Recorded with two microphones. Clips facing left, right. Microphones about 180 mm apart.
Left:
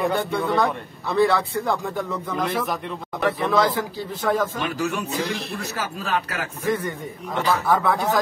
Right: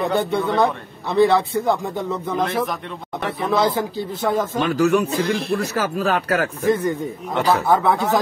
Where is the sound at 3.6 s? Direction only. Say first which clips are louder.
Right 3 dB; 25° right (ahead or behind).